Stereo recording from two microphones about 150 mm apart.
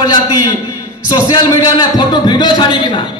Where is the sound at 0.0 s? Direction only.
25° left (ahead or behind).